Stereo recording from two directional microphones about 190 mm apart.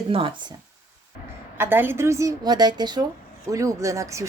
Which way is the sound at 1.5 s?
10° right (ahead or behind).